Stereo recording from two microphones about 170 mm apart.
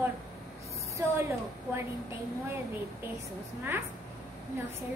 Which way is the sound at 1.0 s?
15° right (ahead or behind).